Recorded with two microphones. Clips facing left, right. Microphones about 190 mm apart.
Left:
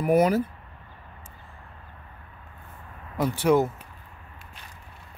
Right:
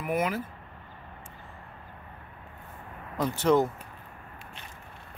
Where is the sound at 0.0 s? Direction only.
40° left (ahead or behind).